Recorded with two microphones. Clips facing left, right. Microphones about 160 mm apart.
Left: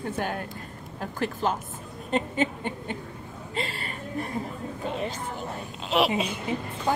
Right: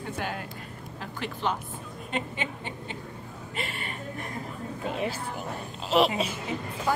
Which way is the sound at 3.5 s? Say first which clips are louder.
Left 3 dB; 30° left (ahead or behind).